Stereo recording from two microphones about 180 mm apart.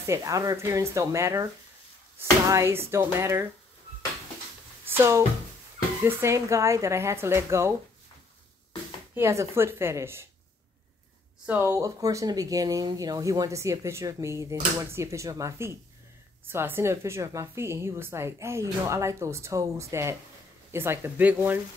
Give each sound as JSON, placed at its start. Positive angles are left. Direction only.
{"t": 0.0, "sound": "speech", "side_deg": -15}
{"t": 2.5, "sound": "speech", "side_deg": -15}
{"t": 4.8, "sound": "speech", "side_deg": -15}
{"t": 9.1, "sound": "speech", "side_deg": -15}
{"t": 11.4, "sound": "speech", "side_deg": -10}